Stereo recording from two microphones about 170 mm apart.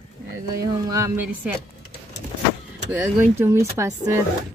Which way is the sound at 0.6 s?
20° right (ahead or behind).